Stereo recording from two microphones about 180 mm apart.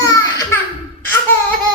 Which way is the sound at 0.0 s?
20° left (ahead or behind).